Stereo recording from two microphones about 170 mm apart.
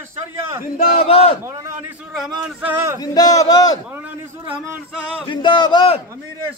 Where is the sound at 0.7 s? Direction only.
60° left (ahead or behind).